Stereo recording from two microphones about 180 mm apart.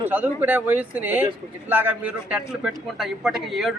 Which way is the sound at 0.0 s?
10° right (ahead or behind).